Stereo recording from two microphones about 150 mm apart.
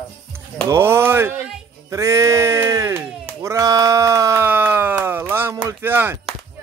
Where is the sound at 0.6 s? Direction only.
15° right (ahead or behind).